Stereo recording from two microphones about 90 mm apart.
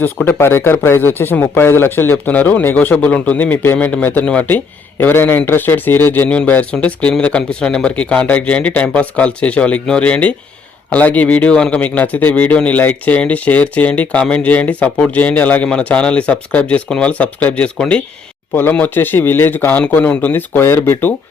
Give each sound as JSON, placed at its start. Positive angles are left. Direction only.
{"t": 0.3, "sound": "a man's voice", "side_deg": 25}
{"t": 18.5, "sound": "speech", "side_deg": 25}